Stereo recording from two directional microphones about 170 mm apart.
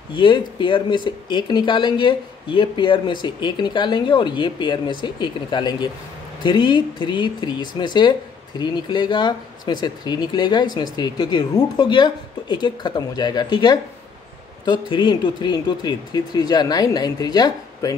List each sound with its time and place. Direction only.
0.1 s speech: 25° left (ahead or behind)